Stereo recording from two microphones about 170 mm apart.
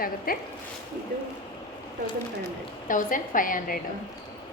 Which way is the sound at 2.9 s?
50° left (ahead or behind).